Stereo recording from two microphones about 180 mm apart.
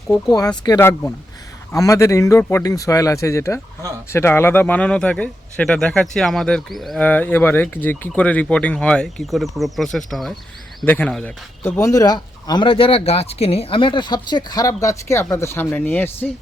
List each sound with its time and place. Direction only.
0.3 s speech: 20° left (ahead or behind)